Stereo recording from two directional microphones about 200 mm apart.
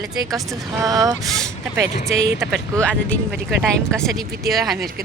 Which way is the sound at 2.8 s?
5° left (ahead or behind).